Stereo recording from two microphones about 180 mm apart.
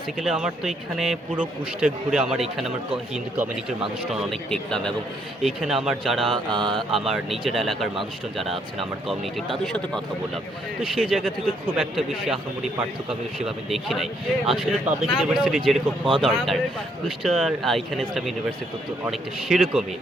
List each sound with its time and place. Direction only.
0.2 s a man's voice: 5° right (ahead or behind)
4.1 s a man's voice: centre (ahead or behind)
16.0 s speech: 30° right (ahead or behind)
17.2 s a man's voice: centre (ahead or behind)
19.1 s a man's voice: centre (ahead or behind)